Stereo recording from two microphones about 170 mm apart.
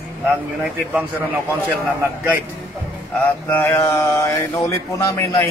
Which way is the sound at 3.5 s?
15° left (ahead or behind).